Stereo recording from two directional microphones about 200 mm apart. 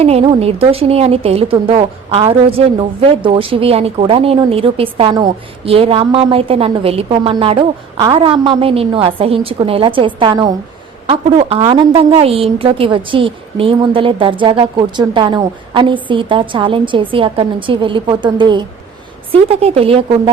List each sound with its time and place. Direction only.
0.0 s a woman's voice: 30° right (ahead or behind)